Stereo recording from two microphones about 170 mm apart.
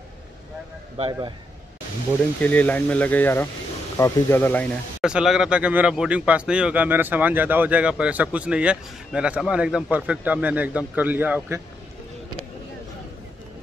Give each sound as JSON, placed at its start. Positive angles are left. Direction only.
{"t": 0.9, "sound": "speech", "side_deg": -35}
{"t": 2.4, "sound": "speech", "side_deg": 10}
{"t": 5.0, "sound": "a man's voice", "side_deg": -5}